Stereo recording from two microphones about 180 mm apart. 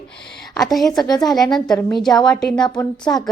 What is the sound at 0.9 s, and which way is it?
Speech, 20° left (ahead or behind).